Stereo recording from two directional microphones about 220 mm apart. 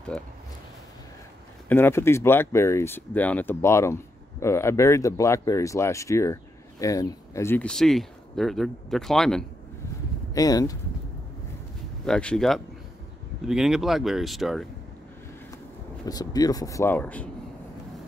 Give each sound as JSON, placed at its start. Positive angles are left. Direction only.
{"t": 1.7, "sound": "speech", "side_deg": 10}
{"t": 10.3, "sound": "speech", "side_deg": 15}
{"t": 12.0, "sound": "speech", "side_deg": 5}
{"t": 16.1, "sound": "speech", "side_deg": 15}